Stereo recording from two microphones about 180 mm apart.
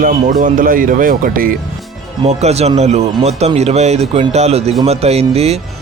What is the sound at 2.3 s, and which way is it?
Speech, 35° right (ahead or behind).